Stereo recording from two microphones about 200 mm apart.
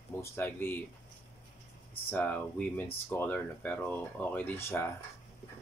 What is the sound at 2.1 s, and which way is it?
Speech, 10° left (ahead or behind).